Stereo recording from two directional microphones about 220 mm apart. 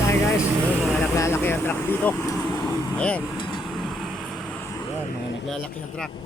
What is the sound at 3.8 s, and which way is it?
Vehicle, centre (ahead or behind).